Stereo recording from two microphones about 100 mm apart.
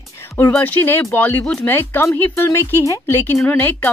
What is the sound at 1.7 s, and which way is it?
Speech, 25° left (ahead or behind).